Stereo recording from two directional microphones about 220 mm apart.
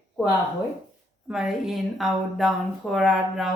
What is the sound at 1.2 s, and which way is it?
Speech, centre (ahead or behind).